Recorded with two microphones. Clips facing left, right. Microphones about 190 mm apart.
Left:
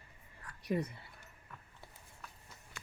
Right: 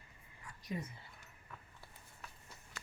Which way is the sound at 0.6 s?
65° left (ahead or behind).